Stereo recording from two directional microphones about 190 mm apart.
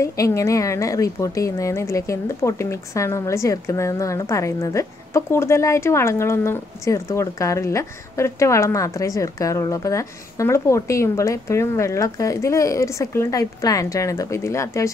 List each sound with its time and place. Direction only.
0.0 s a woman's voice: 15° left (ahead or behind)